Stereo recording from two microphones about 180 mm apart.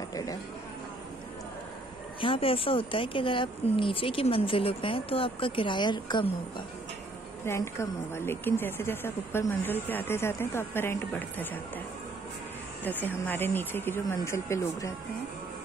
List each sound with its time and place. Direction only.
0.1 s speech: 20° left (ahead or behind)
2.1 s speech: 30° left (ahead or behind)
7.4 s speech: 15° left (ahead or behind)
12.8 s speech: 10° left (ahead or behind)